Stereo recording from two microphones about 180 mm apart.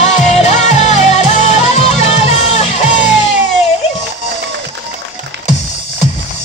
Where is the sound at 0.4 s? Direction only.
40° left (ahead or behind).